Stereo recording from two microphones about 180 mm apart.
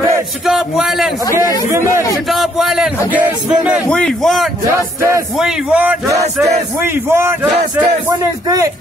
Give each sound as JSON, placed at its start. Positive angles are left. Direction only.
{"t": 0.5, "sound": "speech", "side_deg": 0}
{"t": 2.2, "sound": "speech", "side_deg": 0}
{"t": 3.9, "sound": "a man's voice", "side_deg": 5}